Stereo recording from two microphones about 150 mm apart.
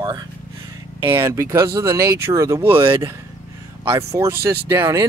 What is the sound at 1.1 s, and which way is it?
Speech, 20° right (ahead or behind).